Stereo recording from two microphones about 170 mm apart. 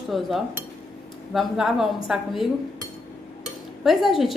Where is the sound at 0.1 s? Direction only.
Centre (ahead or behind).